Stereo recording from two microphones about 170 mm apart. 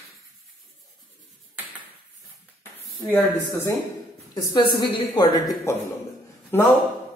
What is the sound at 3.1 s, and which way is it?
A woman's voice, 15° left (ahead or behind).